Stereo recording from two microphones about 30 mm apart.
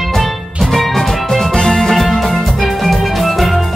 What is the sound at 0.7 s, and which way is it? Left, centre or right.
Music, centre.